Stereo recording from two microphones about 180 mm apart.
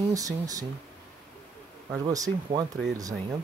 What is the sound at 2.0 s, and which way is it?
Speech, 20° right (ahead or behind).